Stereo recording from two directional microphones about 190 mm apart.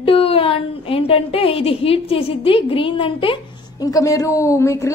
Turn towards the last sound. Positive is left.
turn(degrees=15)  # may be behind; listen again after turning